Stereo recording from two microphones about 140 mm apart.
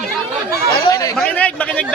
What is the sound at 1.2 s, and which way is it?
Speech, 10° left (ahead or behind).